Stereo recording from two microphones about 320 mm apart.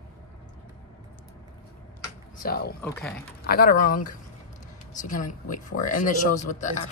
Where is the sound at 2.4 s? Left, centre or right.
Left.